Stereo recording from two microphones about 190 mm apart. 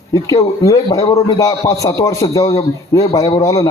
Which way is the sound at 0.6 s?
15° left (ahead or behind).